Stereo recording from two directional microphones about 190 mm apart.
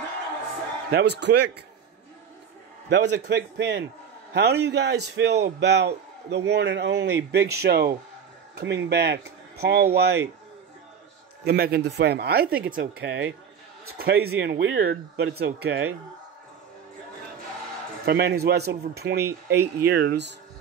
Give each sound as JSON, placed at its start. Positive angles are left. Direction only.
{"t": 0.8, "sound": "a man's voice", "side_deg": -60}
{"t": 2.9, "sound": "a man's voice", "side_deg": -65}
{"t": 11.4, "sound": "a man's voice", "side_deg": -55}
{"t": 13.9, "sound": "a man's voice", "side_deg": -55}
{"t": 18.0, "sound": "a man's voice", "side_deg": -60}